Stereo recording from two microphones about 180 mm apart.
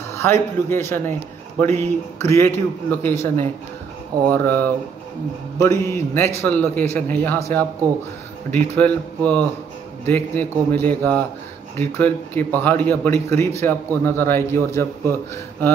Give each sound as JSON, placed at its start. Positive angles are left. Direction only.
{"t": 0.1, "sound": "a man's voice", "side_deg": 15}